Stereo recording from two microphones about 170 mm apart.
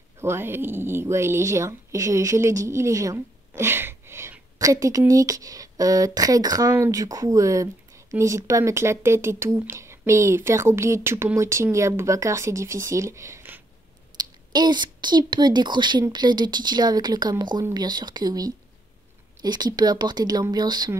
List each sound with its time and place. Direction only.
0.2 s a woman's voice: 15° right (ahead or behind)